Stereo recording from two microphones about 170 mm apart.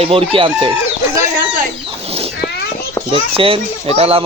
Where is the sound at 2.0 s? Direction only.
35° right (ahead or behind).